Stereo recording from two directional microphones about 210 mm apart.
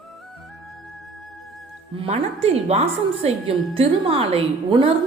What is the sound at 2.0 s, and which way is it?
A woman's voice, 30° right (ahead or behind).